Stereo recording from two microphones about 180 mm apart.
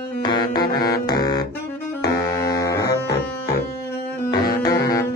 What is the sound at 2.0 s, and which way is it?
Music, 20° left (ahead or behind).